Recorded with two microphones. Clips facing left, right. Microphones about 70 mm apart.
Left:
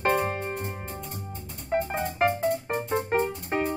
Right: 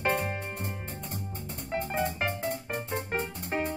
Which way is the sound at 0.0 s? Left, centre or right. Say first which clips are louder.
Left 4 dB; left.